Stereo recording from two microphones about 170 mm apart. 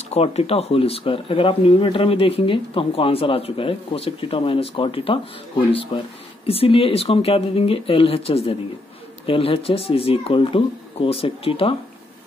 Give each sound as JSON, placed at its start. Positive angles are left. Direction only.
{"t": 0.1, "sound": "speech", "side_deg": 35}